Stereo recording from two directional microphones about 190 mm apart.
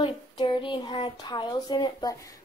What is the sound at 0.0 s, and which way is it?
A woman's voice, 25° left (ahead or behind).